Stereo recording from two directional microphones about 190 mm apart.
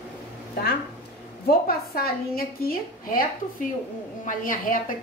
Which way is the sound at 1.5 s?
55° left (ahead or behind).